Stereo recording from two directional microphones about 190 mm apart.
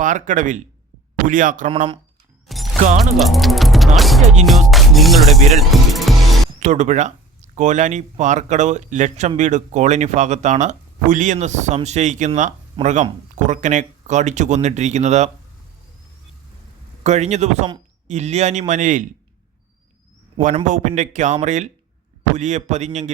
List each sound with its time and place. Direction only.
0.0 s a man's voice: 40° right (ahead or behind)
2.5 s music: centre (ahead or behind)
6.6 s speech: 40° right (ahead or behind)
17.0 s speech: 35° right (ahead or behind)
20.7 s speech: 40° right (ahead or behind)